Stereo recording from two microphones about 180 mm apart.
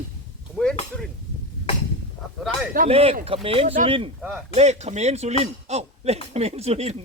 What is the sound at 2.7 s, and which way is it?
Speech, 35° right (ahead or behind).